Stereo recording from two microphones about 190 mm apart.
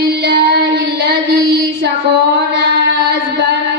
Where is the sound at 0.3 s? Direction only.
60° right (ahead or behind).